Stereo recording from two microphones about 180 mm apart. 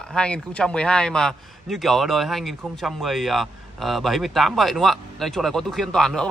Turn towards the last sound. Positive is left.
turn(degrees=5)  # may be behind; listen again after turning